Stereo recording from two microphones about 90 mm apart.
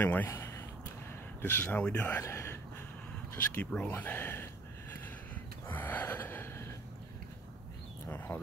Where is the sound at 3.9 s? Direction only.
20° left (ahead or behind).